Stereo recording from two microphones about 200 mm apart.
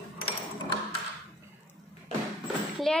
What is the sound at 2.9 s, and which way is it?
Speech, 5° left (ahead or behind).